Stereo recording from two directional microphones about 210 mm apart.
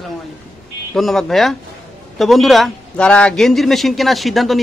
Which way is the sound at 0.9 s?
Centre (ahead or behind).